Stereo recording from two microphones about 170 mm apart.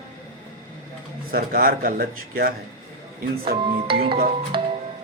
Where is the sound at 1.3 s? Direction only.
60° right (ahead or behind).